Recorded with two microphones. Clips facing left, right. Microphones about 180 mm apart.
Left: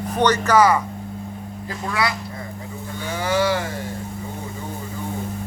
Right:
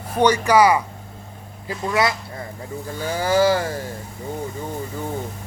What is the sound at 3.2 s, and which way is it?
Speech, 35° right (ahead or behind).